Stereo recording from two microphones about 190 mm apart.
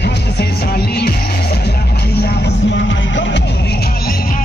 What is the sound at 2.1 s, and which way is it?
Music, 60° left (ahead or behind).